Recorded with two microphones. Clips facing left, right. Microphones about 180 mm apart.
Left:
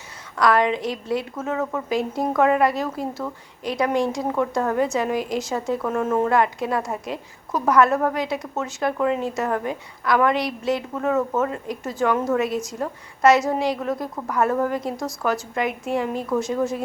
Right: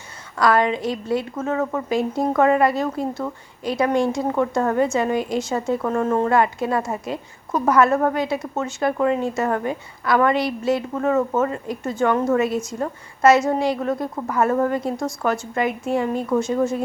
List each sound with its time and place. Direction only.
0.3 s a woman's voice: centre (ahead or behind)